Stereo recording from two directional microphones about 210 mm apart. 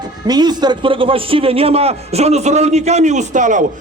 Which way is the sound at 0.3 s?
20° right (ahead or behind).